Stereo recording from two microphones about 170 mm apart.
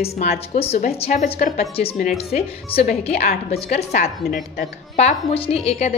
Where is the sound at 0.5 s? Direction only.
40° left (ahead or behind).